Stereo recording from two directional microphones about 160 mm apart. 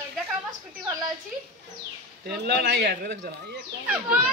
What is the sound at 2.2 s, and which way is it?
Speech, 90° right.